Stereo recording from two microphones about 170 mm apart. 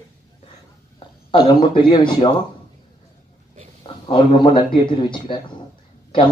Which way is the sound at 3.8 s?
30° left (ahead or behind).